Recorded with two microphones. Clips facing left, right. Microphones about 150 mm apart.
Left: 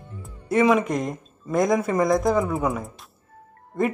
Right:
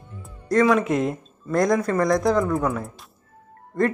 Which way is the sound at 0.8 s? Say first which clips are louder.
Right 3 dB; 5° right (ahead or behind).